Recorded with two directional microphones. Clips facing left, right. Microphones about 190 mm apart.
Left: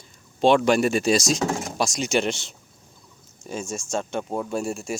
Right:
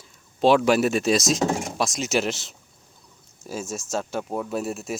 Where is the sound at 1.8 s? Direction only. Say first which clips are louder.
Left 3 dB; centre (ahead or behind).